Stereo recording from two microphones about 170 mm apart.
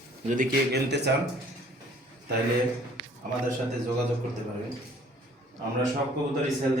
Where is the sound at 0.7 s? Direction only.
90° right.